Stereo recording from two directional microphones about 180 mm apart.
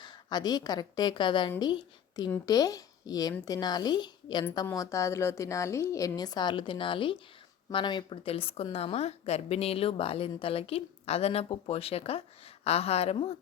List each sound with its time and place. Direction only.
0.0 s a woman's voice: 25° left (ahead or behind)